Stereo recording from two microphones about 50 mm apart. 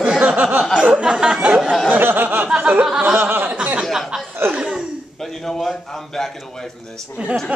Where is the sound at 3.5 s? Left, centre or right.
Right.